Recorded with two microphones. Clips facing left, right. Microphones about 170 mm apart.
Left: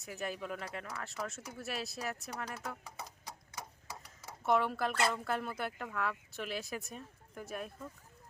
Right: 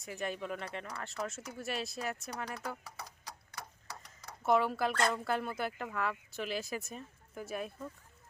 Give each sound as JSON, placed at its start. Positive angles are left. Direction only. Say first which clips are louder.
{"t": 0.0, "sound": "speech", "louder": "right 2 dB", "side_deg": 0}
{"t": 2.8, "sound": "horse", "louder": "left 1 dB", "side_deg": 20}
{"t": 4.0, "sound": "speech", "louder": "right 2 dB", "side_deg": 5}